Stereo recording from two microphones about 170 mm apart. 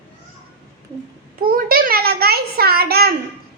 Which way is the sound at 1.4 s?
60° right (ahead or behind).